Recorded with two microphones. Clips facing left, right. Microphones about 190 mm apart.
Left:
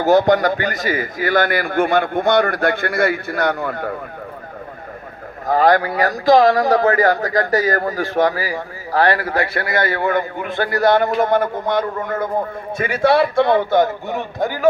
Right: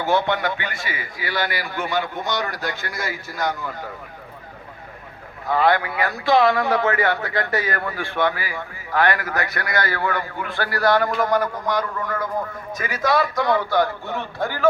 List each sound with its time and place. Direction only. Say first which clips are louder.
0.0 s a man's voice: left 8 dB; 40° left (ahead or behind); by 3.9 s 60° left (ahead or behind)
5.5 s speech: left 5 dB; 40° left (ahead or behind); by 14.7 s 15° left (ahead or behind)